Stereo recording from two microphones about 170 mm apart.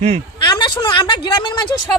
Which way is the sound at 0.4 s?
30° left (ahead or behind).